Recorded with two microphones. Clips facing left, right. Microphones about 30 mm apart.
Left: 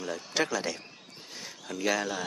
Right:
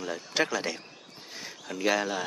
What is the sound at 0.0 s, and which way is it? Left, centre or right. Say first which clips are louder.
Speech: right 1 dB; centre.